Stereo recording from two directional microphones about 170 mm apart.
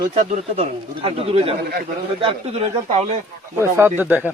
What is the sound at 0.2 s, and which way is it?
Speech, 40° right (ahead or behind).